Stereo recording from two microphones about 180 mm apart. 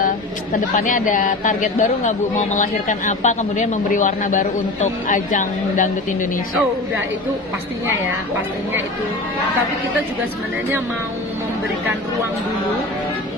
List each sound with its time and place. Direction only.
0.7 s speech: 45° left (ahead or behind)